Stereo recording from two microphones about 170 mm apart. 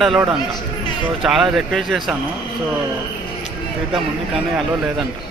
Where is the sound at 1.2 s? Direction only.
Centre (ahead or behind).